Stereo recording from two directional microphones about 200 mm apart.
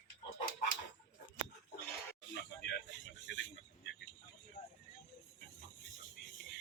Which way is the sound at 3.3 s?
65° left (ahead or behind).